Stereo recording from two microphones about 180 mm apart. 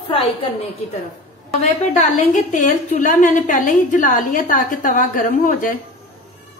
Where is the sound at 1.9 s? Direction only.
45° left (ahead or behind).